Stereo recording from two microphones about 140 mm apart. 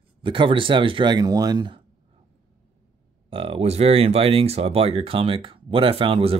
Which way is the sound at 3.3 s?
45° right (ahead or behind).